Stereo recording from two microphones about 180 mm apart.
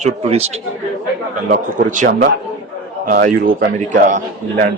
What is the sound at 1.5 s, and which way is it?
A man's voice, 45° right (ahead or behind).